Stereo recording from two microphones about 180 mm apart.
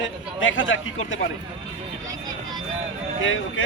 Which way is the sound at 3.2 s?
90° left.